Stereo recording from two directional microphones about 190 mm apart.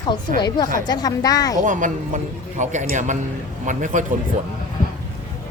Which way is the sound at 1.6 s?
40° right (ahead or behind).